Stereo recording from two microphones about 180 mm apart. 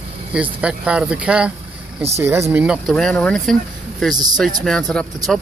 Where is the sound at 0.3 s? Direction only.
5° right (ahead or behind).